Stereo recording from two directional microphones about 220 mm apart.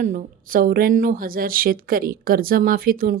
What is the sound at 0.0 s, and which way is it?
Speech, 35° right (ahead or behind).